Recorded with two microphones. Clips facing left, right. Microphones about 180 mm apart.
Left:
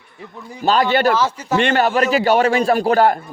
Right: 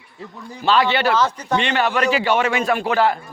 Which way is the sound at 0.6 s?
45° left (ahead or behind).